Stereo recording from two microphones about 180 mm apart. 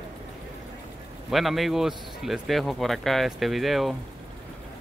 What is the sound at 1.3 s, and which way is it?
Speech, centre (ahead or behind).